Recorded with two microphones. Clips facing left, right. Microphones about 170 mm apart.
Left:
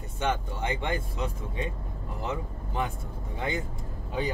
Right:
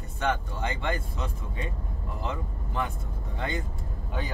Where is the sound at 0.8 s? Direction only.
15° left (ahead or behind).